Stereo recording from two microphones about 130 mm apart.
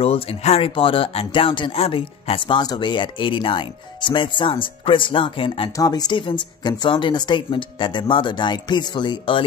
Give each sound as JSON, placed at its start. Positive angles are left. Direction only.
{"t": 0.0, "sound": "speech", "side_deg": 50}
{"t": 5.8, "sound": "speech", "side_deg": 30}